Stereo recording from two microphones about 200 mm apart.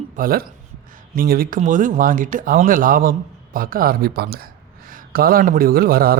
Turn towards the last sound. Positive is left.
turn(degrees=-50)  # may be behind; listen again after turning